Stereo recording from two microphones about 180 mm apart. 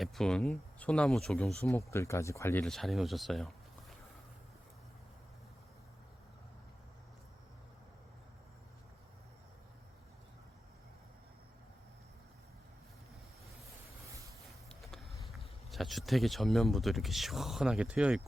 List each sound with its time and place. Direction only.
0.0 s speech: centre (ahead or behind)
1.9 s speech: 15° left (ahead or behind)
2.7 s speech: centre (ahead or behind)
14.7 s speech: centre (ahead or behind)